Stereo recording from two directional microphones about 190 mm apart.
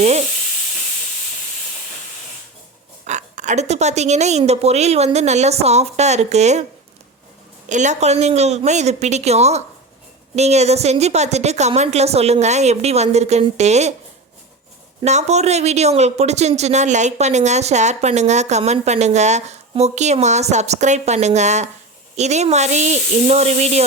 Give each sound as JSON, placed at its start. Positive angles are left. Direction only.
{"t": 3.0, "sound": "speech", "side_deg": -40}
{"t": 7.7, "sound": "speech", "side_deg": -40}
{"t": 15.0, "sound": "speech", "side_deg": -35}